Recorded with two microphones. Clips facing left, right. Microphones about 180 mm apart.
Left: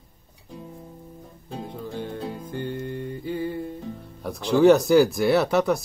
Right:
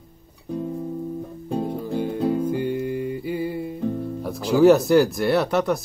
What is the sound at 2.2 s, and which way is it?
Music, 65° right (ahead or behind).